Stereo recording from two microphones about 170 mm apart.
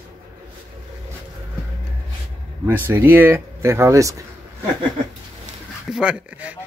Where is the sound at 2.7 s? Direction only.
15° right (ahead or behind).